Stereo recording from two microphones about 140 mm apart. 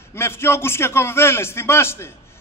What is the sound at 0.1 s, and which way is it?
A man's voice, 20° left (ahead or behind).